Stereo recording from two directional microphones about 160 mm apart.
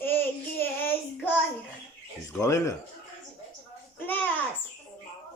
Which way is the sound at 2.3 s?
20° left (ahead or behind).